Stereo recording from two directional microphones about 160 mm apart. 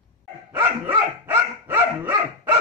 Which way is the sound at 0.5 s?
15° right (ahead or behind).